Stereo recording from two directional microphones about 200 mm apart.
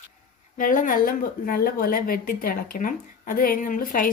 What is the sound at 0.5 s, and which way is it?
A woman's voice, 45° left (ahead or behind).